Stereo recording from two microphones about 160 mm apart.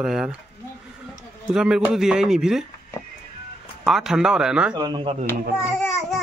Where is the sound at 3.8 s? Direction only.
Centre (ahead or behind).